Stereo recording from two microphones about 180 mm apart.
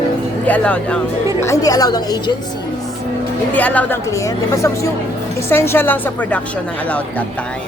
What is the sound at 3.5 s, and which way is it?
Speech, 10° left (ahead or behind).